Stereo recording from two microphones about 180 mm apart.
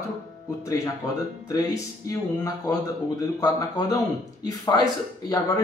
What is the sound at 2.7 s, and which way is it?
Speech, 20° left (ahead or behind).